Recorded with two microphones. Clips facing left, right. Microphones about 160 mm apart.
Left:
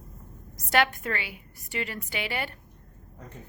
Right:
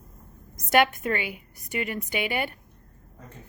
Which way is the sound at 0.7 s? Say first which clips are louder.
Right 4 dB; 15° right (ahead or behind).